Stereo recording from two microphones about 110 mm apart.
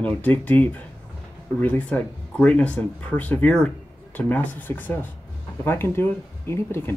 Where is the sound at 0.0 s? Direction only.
15° left (ahead or behind).